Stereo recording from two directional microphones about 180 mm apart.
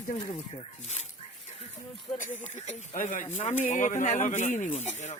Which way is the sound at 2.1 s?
45° left (ahead or behind).